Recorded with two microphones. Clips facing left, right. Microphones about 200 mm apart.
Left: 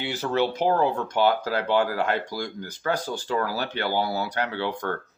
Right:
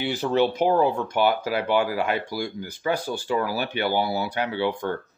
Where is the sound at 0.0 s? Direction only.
15° right (ahead or behind).